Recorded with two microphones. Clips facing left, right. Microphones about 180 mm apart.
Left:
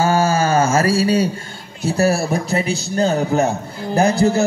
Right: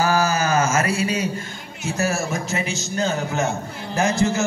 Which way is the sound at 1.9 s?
35° left (ahead or behind).